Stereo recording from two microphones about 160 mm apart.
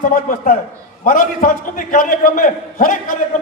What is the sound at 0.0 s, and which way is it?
A man's voice, 60° left (ahead or behind).